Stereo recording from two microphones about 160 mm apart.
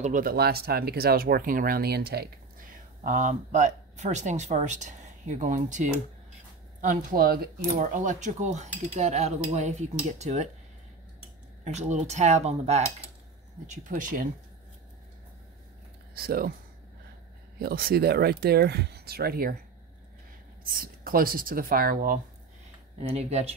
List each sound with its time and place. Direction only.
0.0 s speech: 60° right (ahead or behind); by 2.2 s 75° right (ahead or behind)
2.7 s speech: 55° right (ahead or behind)
7.6 s cutlery: 50° right (ahead or behind)
11.6 s cutlery: 45° right (ahead or behind)
13.7 s speech: 55° right (ahead or behind)
16.2 s speech: 70° right (ahead or behind)
17.6 s speech: 70° right (ahead or behind)
20.6 s speech: 65° right (ahead or behind)
23.0 s speech: 40° right (ahead or behind)